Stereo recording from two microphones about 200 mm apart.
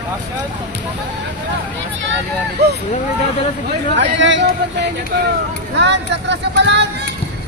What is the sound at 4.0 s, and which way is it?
Speech, 65° right (ahead or behind).